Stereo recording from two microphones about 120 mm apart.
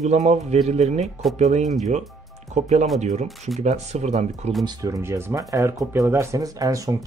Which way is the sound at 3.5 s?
65° right (ahead or behind).